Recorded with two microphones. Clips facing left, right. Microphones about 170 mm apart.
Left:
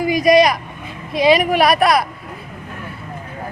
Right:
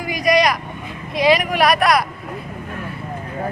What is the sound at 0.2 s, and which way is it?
Vehicle, centre (ahead or behind).